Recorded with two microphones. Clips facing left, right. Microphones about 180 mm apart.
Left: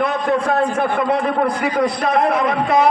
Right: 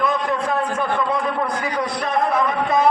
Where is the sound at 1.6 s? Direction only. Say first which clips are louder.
Left 6 dB; 65° left (ahead or behind).